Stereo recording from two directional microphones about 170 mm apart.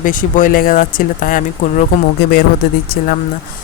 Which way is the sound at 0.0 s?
50° left (ahead or behind).